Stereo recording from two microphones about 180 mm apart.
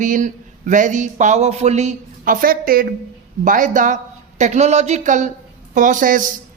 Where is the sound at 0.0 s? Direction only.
45° right (ahead or behind).